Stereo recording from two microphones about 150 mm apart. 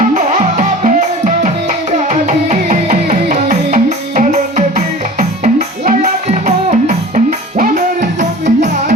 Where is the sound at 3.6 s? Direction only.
60° right (ahead or behind).